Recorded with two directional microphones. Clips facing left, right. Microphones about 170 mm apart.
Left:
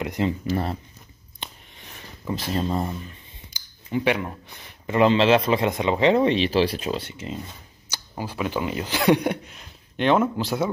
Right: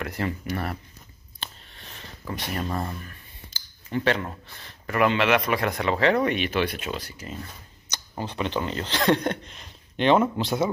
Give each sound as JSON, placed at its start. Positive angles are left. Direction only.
{"t": 0.0, "sound": "speech", "side_deg": 20}
{"t": 1.4, "sound": "a sound", "side_deg": 15}
{"t": 2.3, "sound": "speech", "side_deg": 25}
{"t": 7.9, "sound": "speech", "side_deg": 5}